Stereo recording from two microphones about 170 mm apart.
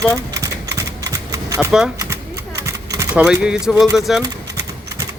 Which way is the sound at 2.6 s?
15° right (ahead or behind).